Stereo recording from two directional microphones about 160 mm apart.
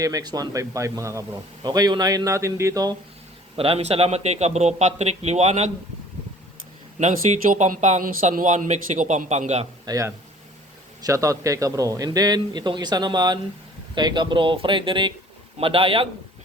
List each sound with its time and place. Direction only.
0.0 s a man's voice: 25° right (ahead or behind)
3.5 s speech: 35° right (ahead or behind)
7.0 s speech: 50° right (ahead or behind)
9.8 s a man's voice: 20° right (ahead or behind)